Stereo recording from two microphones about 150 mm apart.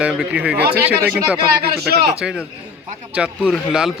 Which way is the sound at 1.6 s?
90° right.